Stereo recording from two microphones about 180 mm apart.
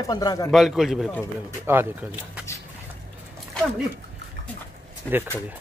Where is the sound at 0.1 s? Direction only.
20° left (ahead or behind).